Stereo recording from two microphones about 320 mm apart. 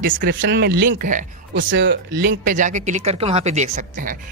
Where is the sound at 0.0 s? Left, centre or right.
Right.